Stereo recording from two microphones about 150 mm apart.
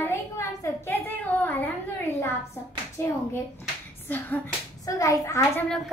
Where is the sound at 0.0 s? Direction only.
15° left (ahead or behind).